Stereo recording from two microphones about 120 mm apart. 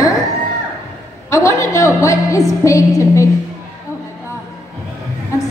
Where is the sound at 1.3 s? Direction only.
25° left (ahead or behind).